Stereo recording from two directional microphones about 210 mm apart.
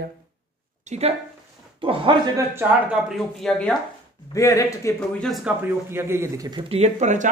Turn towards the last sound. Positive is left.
turn(degrees=-35)  # may be behind; listen again after turning